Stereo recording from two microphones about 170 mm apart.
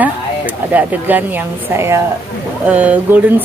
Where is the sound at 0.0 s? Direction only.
10° right (ahead or behind).